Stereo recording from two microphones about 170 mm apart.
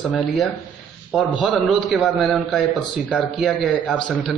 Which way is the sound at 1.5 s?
Centre (ahead or behind).